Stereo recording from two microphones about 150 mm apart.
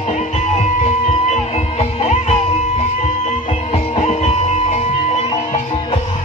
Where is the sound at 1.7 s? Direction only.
45° left (ahead or behind).